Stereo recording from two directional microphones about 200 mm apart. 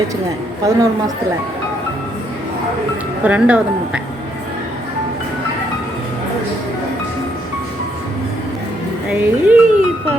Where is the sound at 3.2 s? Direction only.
5° right (ahead or behind).